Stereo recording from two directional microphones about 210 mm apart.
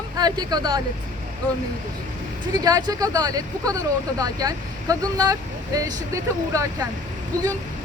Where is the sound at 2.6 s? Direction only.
15° right (ahead or behind).